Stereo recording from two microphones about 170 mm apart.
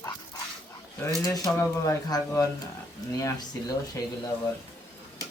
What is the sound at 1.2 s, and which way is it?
Speech, 20° left (ahead or behind).